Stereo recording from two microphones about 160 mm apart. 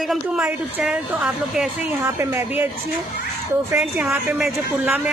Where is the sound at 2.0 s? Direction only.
15° right (ahead or behind).